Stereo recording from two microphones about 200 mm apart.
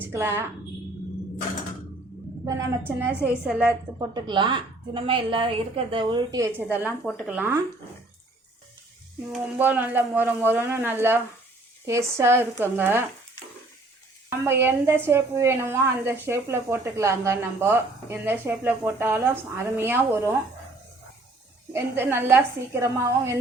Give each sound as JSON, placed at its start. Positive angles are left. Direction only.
{"t": 0.0, "sound": "a woman's voice", "side_deg": -10}
{"t": 2.4, "sound": "a woman's voice", "side_deg": -15}
{"t": 4.1, "sound": "a woman's voice", "side_deg": -25}
{"t": 9.3, "sound": "a woman's voice", "side_deg": -10}
{"t": 14.3, "sound": "a woman's voice", "side_deg": -10}
{"t": 21.7, "sound": "a woman's voice", "side_deg": -10}